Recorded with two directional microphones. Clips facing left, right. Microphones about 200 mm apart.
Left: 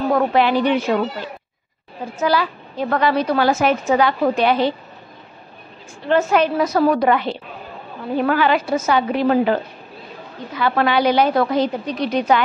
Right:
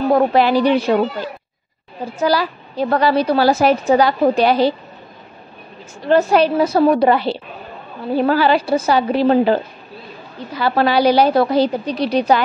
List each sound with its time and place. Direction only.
0.1 s a woman's voice: 35° right (ahead or behind)
6.0 s a woman's voice: 35° right (ahead or behind)